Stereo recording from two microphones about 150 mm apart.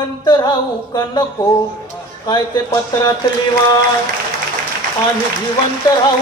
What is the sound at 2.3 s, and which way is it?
Speech, 25° left (ahead or behind).